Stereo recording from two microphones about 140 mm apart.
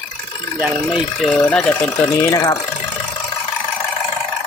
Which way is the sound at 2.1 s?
20° left (ahead or behind).